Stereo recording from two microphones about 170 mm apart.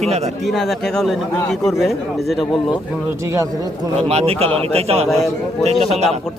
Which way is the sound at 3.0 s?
15° right (ahead or behind).